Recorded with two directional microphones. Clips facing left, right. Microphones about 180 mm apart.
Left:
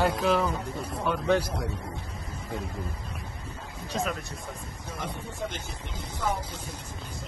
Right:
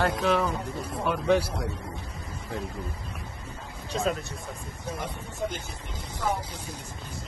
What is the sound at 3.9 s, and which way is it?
Speech, 25° right (ahead or behind).